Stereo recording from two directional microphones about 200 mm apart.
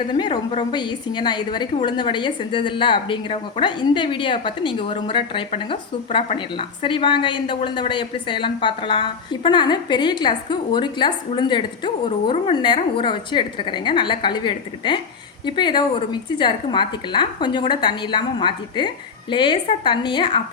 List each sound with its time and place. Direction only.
0.1 s a woman's voice: 20° left (ahead or behind)